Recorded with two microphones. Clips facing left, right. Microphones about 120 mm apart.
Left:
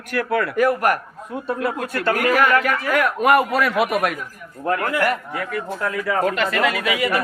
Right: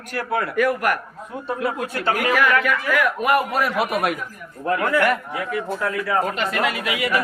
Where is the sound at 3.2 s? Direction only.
70° left (ahead or behind).